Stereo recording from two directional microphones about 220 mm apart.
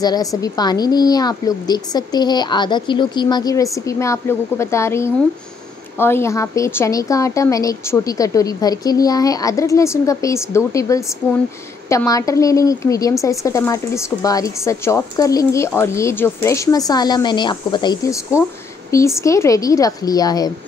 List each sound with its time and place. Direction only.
0.0 s a woman's voice: 15° left (ahead or behind)